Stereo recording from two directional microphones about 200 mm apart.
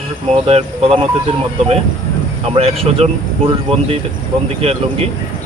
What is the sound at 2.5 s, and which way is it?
Speech, 30° right (ahead or behind).